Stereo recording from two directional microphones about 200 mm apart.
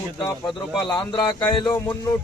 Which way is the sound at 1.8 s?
10° left (ahead or behind).